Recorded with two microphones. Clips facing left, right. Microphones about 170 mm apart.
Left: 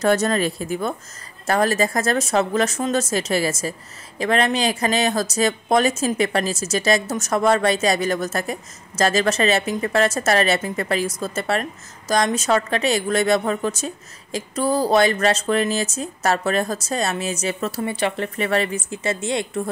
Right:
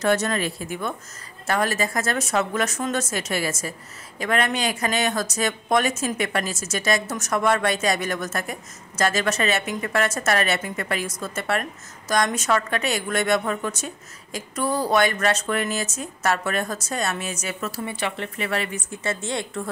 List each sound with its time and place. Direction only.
0.0 s a woman's voice: 35° left (ahead or behind)
19.0 s a woman's voice: 20° left (ahead or behind)